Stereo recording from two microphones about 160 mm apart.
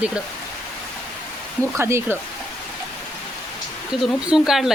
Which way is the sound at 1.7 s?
15° right (ahead or behind).